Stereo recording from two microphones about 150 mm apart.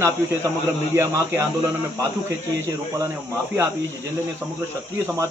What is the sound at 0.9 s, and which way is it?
Speech, 20° right (ahead or behind).